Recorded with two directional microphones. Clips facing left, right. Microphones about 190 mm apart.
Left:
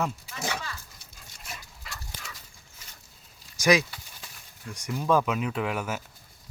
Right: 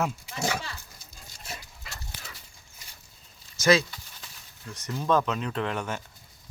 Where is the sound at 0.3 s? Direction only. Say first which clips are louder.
Right 4 dB; 30° right (ahead or behind).